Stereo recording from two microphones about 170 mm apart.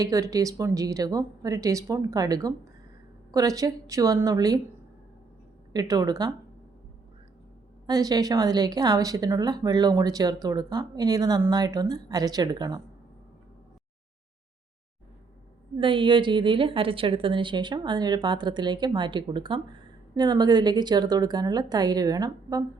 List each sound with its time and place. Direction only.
0.0 s speech: 20° right (ahead or behind)
5.7 s speech: 25° right (ahead or behind)
7.9 s speech: 20° right (ahead or behind)
15.8 s speech: 30° right (ahead or behind)